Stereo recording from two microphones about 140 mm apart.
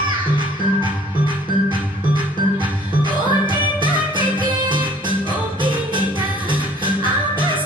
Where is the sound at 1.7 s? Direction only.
35° right (ahead or behind).